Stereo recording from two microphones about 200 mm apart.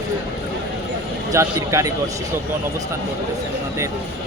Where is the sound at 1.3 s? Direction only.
15° right (ahead or behind).